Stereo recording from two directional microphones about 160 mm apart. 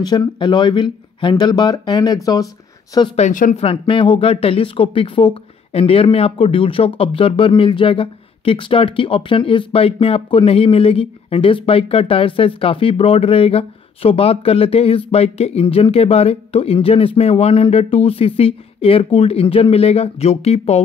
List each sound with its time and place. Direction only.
0.0 s speech: 25° left (ahead or behind)
3.2 s speech: 55° left (ahead or behind)
3.5 s speech: 35° left (ahead or behind)